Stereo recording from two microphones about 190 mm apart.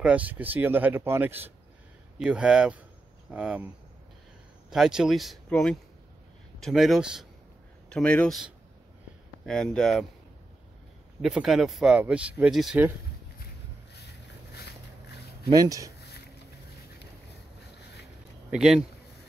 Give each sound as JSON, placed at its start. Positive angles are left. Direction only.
{"t": 0.0, "sound": "speech", "side_deg": -5}
{"t": 4.6, "sound": "speech", "side_deg": -5}
{"t": 11.1, "sound": "speech", "side_deg": 0}
{"t": 13.9, "sound": "boat", "side_deg": 60}
{"t": 15.5, "sound": "speech", "side_deg": -20}
{"t": 18.5, "sound": "speech", "side_deg": 0}